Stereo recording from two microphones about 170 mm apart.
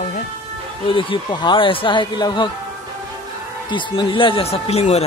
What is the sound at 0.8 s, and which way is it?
Speech, 30° left (ahead or behind).